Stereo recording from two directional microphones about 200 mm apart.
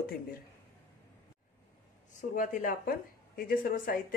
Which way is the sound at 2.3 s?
40° left (ahead or behind).